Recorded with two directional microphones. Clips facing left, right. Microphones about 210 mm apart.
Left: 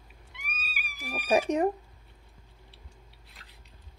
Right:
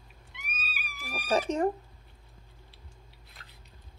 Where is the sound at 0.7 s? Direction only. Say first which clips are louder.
Left 3 dB; 15° left (ahead or behind).